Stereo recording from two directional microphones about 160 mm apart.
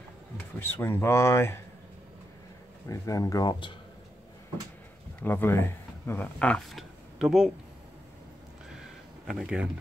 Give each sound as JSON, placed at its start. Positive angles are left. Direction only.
{"t": 0.6, "sound": "speech", "side_deg": 15}
{"t": 2.9, "sound": "speech", "side_deg": 20}
{"t": 5.2, "sound": "speech", "side_deg": 15}
{"t": 9.3, "sound": "speech", "side_deg": -5}